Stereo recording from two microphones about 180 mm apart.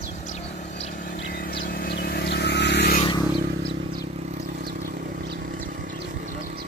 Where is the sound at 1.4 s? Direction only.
60° left (ahead or behind).